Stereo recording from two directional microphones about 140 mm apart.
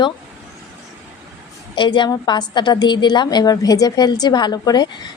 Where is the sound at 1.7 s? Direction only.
35° left (ahead or behind).